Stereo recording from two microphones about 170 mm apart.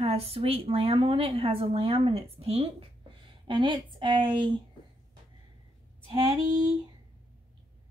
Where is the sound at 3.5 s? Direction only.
30° right (ahead or behind).